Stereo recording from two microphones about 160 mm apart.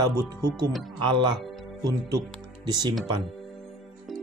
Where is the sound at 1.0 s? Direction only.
30° right (ahead or behind).